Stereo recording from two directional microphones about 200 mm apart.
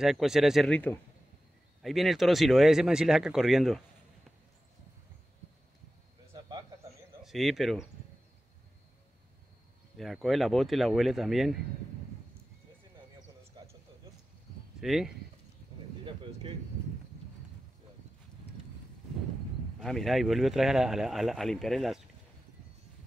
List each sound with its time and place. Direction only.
0.0 s speech: centre (ahead or behind)
7.2 s speech: centre (ahead or behind)
9.9 s speech: centre (ahead or behind)
13.5 s a sound: 20° right (ahead or behind)
14.8 s speech: centre (ahead or behind)
16.0 s a sound: 25° right (ahead or behind)
19.8 s speech: centre (ahead or behind)